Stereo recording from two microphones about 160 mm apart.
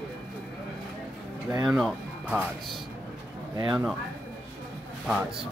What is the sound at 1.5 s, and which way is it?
Speech, 20° right (ahead or behind).